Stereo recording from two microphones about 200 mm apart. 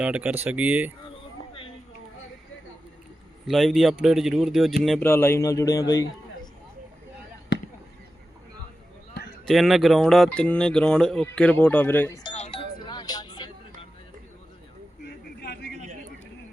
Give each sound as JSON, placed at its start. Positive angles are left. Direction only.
{"t": 0.0, "sound": "speech", "side_deg": -5}
{"t": 3.4, "sound": "speech", "side_deg": 0}
{"t": 5.0, "sound": "speech", "side_deg": 10}
{"t": 9.5, "sound": "speech", "side_deg": 0}
{"t": 12.2, "sound": "music", "side_deg": 30}
{"t": 15.0, "sound": "vehicle", "side_deg": 55}